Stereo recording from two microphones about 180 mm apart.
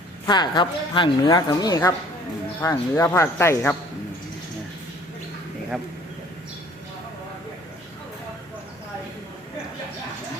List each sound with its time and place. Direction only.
0.3 s speech: 25° left (ahead or behind)